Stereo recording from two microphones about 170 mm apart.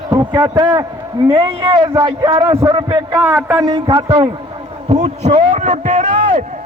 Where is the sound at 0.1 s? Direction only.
25° right (ahead or behind).